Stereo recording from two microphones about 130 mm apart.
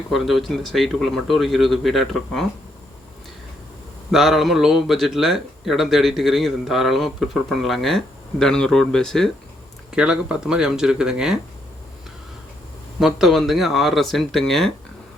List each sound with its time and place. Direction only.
0.1 s speech: centre (ahead or behind)
4.1 s speech: centre (ahead or behind)
9.9 s speech: 5° right (ahead or behind)
13.0 s speech: centre (ahead or behind)